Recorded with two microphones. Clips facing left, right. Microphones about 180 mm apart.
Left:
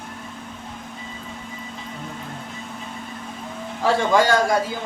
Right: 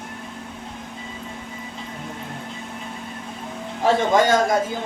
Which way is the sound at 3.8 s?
20° right (ahead or behind).